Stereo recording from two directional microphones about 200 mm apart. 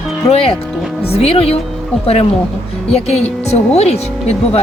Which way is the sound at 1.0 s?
30° left (ahead or behind).